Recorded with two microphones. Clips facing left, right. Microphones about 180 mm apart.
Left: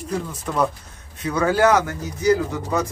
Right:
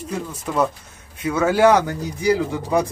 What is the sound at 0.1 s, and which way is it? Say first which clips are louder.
Speech: even; 10° right (ahead or behind).